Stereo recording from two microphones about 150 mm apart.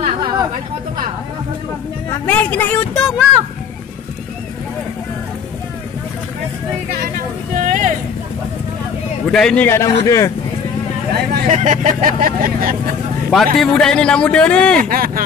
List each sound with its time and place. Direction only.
0.0 s chatter: 35° right (ahead or behind)
2.2 s a man's voice: 10° left (ahead or behind)
7.5 s a sound: 55° right (ahead or behind)
9.3 s a man's voice: 5° left (ahead or behind)
9.7 s a man's voice: 20° left (ahead or behind)
11.4 s speech: 55° right (ahead or behind); by 12.9 s 70° right (ahead or behind)
13.3 s a man's voice: centre (ahead or behind)
14.8 s speech: 70° right (ahead or behind)